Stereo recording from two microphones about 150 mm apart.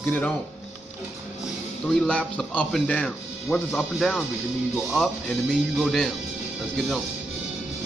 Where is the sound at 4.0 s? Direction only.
Centre (ahead or behind).